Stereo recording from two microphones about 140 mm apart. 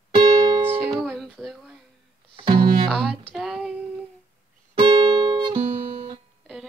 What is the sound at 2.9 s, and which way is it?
Music, 5° left (ahead or behind).